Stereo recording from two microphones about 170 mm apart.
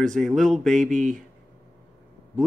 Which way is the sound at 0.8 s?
45° right (ahead or behind).